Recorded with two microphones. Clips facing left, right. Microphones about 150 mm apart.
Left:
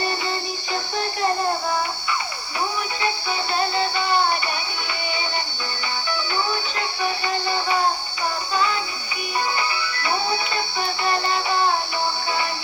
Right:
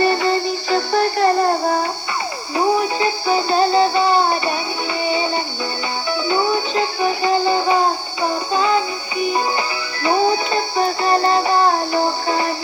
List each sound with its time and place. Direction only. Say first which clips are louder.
0.0 s music: right 9 dB; 60° right (ahead or behind)
2.6 s music: right 9 dB; 35° right (ahead or behind)
6.1 s music: right 8 dB; 30° right (ahead or behind)